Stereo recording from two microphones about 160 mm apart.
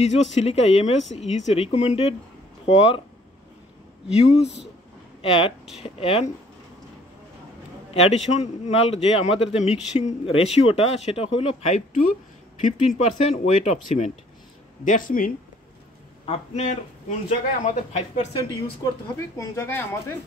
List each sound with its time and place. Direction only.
0.0 s a man's voice: 45° left (ahead or behind)
4.1 s speech: 40° left (ahead or behind)
7.9 s a man's voice: 40° left (ahead or behind)
14.9 s speech: 60° left (ahead or behind)
16.3 s a man's voice: 45° left (ahead or behind)
18.3 s speech: 25° left (ahead or behind)